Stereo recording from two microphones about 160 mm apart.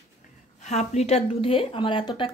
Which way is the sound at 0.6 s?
45° left (ahead or behind).